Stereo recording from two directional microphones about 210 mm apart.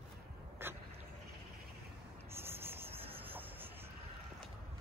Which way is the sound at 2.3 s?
10° right (ahead or behind).